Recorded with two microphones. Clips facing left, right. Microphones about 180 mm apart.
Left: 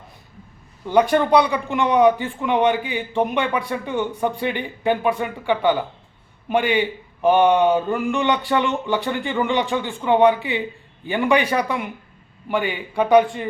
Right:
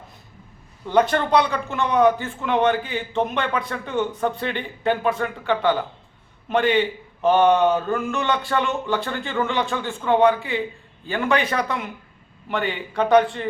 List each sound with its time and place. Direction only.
0.9 s a man's voice: 10° left (ahead or behind)